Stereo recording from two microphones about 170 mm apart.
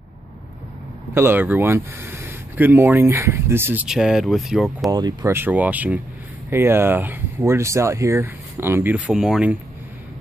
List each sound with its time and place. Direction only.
1.1 s speech: 15° right (ahead or behind)
4.9 s speech: 20° right (ahead or behind); by 9.6 s 5° right (ahead or behind)